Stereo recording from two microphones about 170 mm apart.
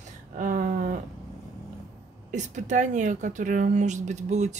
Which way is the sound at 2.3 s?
45° right (ahead or behind).